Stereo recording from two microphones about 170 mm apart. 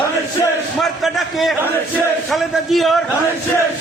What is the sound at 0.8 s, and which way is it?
A man's voice, centre (ahead or behind).